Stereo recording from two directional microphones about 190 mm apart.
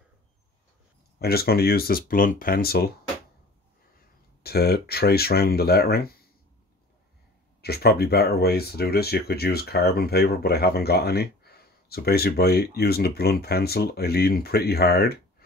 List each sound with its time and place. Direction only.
1.2 s speech: 55° left (ahead or behind)
4.4 s speech: 55° left (ahead or behind)
7.6 s speech: 55° left (ahead or behind)